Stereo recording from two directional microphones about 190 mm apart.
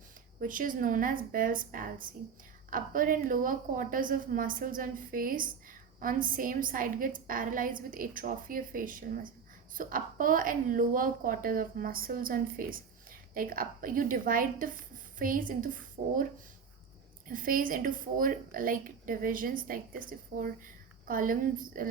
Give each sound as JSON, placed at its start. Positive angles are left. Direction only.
{"t": 0.3, "sound": "a woman's voice", "side_deg": -45}
{"t": 17.2, "sound": "a woman's voice", "side_deg": -45}